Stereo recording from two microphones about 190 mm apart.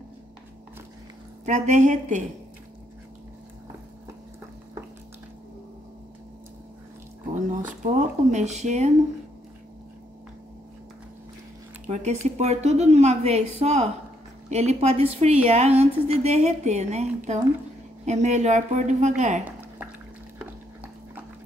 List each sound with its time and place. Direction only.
1.4 s a woman's voice: 40° right (ahead or behind)
7.3 s speech: 40° right (ahead or behind)
11.8 s a woman's voice: 35° right (ahead or behind)